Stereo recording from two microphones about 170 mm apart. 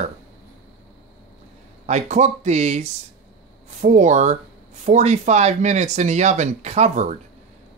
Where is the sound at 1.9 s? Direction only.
40° right (ahead or behind).